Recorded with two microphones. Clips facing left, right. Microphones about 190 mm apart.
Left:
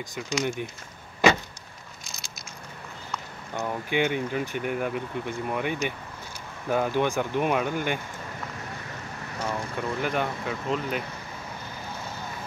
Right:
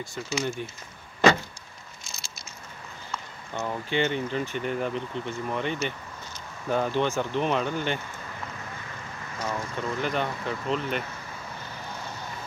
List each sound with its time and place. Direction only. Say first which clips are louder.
0.4 s speech: left 2 dB; 15° left (ahead or behind)
3.5 s speech: left 1 dB; 10° left (ahead or behind)
9.4 s speech: left 1 dB; 10° left (ahead or behind)